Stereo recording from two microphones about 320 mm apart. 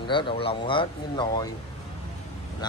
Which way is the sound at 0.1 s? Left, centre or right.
Centre.